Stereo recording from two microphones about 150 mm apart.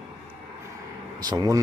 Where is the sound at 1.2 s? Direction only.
25° right (ahead or behind).